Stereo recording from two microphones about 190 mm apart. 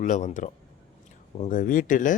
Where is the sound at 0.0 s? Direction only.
40° left (ahead or behind).